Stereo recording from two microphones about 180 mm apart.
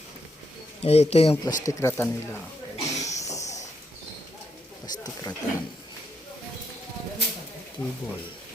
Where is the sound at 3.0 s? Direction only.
15° left (ahead or behind).